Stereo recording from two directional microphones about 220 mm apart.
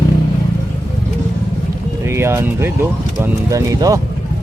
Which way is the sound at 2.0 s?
10° right (ahead or behind).